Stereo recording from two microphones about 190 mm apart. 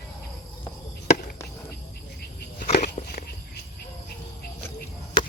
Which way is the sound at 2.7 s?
40° left (ahead or behind).